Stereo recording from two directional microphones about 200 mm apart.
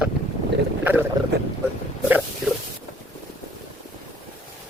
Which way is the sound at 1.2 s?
20° right (ahead or behind).